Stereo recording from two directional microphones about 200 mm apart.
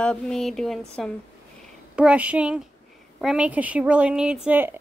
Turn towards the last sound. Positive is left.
turn(degrees=-10)  # may be behind; listen again after turning